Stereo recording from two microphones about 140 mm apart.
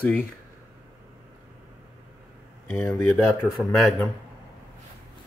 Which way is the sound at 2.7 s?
15° left (ahead or behind).